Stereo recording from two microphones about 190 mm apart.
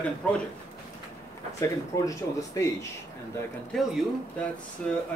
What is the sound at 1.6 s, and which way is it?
Speech, 15° left (ahead or behind).